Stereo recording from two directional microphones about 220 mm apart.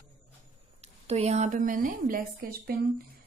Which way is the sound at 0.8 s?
30° right (ahead or behind).